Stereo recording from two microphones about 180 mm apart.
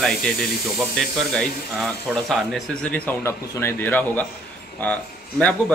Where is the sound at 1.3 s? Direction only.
5° left (ahead or behind).